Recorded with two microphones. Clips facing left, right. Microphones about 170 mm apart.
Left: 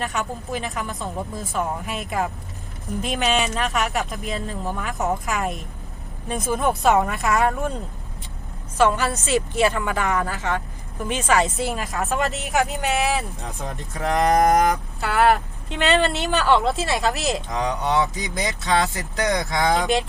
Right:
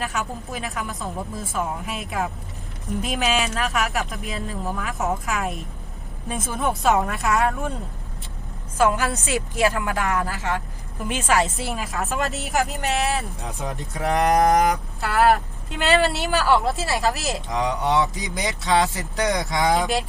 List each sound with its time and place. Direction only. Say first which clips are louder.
0.0 s speech: left 1 dB; centre (ahead or behind)
8.8 s speech: left 1 dB; 10° right (ahead or behind)
13.6 s speech: right 1 dB; 10° right (ahead or behind)
18.3 s speech: right 1 dB; 15° right (ahead or behind)
19.7 s speech: left 1 dB; centre (ahead or behind)